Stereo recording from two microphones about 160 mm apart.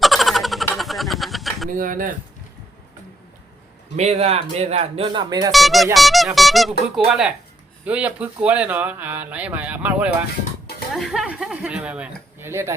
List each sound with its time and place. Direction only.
0.0 s vehicle: centre (ahead or behind)
1.8 s speech: 60° right (ahead or behind)
3.9 s speech: 45° right (ahead or behind); by 5.5 s 25° right (ahead or behind)
5.5 s speech: centre (ahead or behind)